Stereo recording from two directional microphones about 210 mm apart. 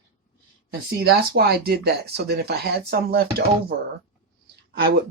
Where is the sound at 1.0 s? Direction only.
50° right (ahead or behind).